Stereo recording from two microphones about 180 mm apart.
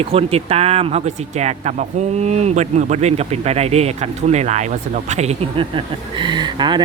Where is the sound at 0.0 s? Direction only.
35° right (ahead or behind).